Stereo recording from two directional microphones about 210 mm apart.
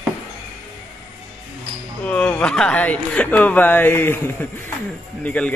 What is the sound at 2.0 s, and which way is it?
Speech, 5° left (ahead or behind).